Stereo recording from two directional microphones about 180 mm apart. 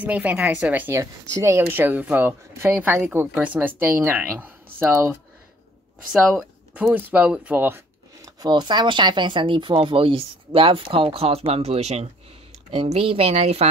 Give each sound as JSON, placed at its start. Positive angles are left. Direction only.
{"t": 0.0, "sound": "a woman's voice", "side_deg": -10}
{"t": 6.7, "sound": "speech", "side_deg": -10}